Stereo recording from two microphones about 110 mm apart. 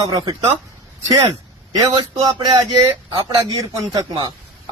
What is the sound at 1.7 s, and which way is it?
Speech, 35° right (ahead or behind).